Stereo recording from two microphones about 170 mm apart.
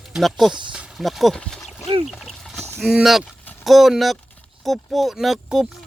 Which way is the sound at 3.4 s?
10° left (ahead or behind).